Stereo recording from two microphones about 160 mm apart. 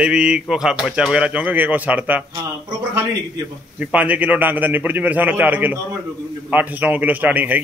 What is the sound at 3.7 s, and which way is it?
A man's voice, 10° right (ahead or behind).